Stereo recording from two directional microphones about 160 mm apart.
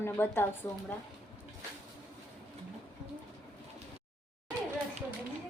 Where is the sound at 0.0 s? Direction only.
15° left (ahead or behind).